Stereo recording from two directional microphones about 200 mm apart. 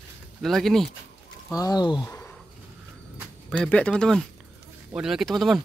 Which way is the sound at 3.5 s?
5° left (ahead or behind).